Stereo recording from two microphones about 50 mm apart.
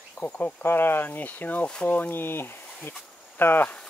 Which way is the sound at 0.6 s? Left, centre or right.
Left.